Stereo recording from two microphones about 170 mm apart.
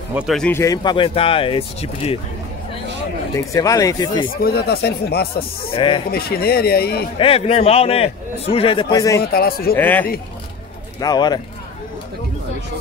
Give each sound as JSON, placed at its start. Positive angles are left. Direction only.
{"t": 0.3, "sound": "a man's voice", "side_deg": 5}
{"t": 0.6, "sound": "a man's voice", "side_deg": 25}
{"t": 3.3, "sound": "speech", "side_deg": 20}
{"t": 4.3, "sound": "speech", "side_deg": 65}
{"t": 5.8, "sound": "speech", "side_deg": 30}
{"t": 6.1, "sound": "speech", "side_deg": 65}
{"t": 7.2, "sound": "a man's voice", "side_deg": 35}
{"t": 9.2, "sound": "speech", "side_deg": 65}
{"t": 9.8, "sound": "speech", "side_deg": 10}
{"t": 11.0, "sound": "speech", "side_deg": 25}